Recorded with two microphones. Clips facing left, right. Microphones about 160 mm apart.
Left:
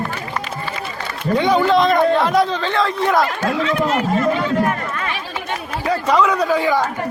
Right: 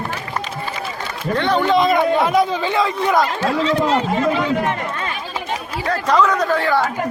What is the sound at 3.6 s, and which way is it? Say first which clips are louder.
Speech: right 1 dB; 30° right (ahead or behind).